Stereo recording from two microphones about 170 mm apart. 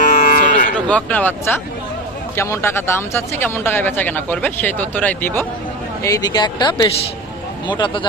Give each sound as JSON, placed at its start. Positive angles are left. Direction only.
{"t": 0.0, "sound": "cattle", "side_deg": 50}
{"t": 0.9, "sound": "speech", "side_deg": 10}